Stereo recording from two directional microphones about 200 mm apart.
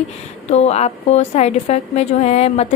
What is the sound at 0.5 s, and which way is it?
A woman's voice, 30° left (ahead or behind).